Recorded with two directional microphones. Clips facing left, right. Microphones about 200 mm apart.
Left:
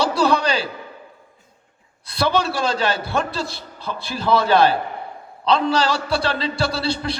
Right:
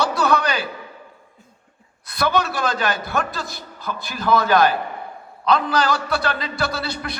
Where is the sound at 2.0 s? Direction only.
30° left (ahead or behind).